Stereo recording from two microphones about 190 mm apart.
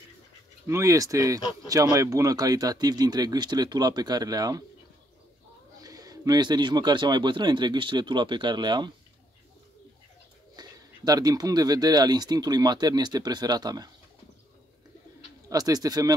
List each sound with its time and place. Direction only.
0.7 s speech: 15° right (ahead or behind)
1.4 s speech: 20° left (ahead or behind)
1.7 s speech: 15° right (ahead or behind)
5.8 s speech: 20° right (ahead or behind)
10.5 s speech: 20° right (ahead or behind)
15.5 s speech: 20° right (ahead or behind)